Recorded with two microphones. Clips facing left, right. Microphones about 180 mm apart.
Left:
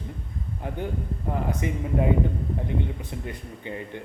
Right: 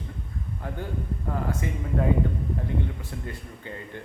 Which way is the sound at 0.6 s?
20° left (ahead or behind).